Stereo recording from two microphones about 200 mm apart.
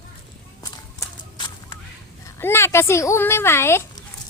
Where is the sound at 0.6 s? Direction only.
15° left (ahead or behind).